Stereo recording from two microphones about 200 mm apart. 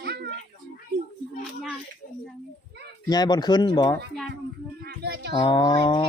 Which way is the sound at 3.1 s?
20° left (ahead or behind).